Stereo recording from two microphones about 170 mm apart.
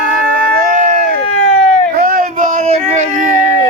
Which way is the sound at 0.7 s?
50° right (ahead or behind).